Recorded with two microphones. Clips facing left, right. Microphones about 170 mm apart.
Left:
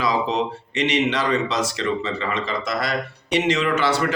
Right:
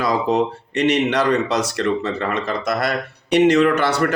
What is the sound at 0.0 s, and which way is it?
Speech, 55° right (ahead or behind).